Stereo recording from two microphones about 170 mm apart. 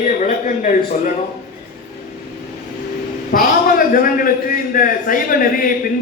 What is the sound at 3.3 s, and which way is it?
A man's voice, 55° left (ahead or behind).